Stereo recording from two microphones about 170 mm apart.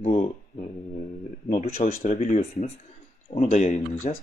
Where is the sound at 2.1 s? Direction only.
40° left (ahead or behind).